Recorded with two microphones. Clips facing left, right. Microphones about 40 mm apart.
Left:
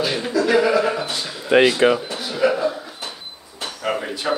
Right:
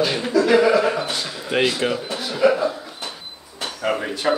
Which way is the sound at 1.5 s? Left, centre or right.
Left.